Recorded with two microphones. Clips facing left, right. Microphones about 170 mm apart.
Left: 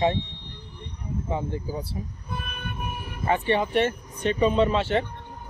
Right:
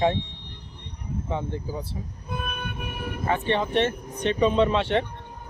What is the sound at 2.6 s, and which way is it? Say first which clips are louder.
Vehicle: right 1 dB; 70° right (ahead or behind).